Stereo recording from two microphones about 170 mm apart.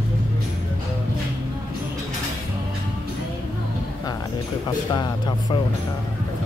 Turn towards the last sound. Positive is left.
turn(degrees=25)  # may be behind; listen again after turning